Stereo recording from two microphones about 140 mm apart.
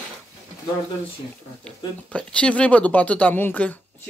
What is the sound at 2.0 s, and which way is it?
Speech, 5° left (ahead or behind).